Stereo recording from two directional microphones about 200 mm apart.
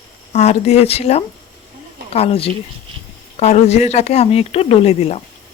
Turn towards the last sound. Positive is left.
turn(degrees=30)  # may be behind; listen again after turning